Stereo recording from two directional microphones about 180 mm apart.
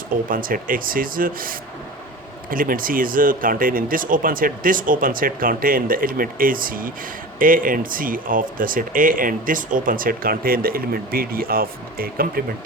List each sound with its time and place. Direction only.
0.3 s speech: 50° right (ahead or behind)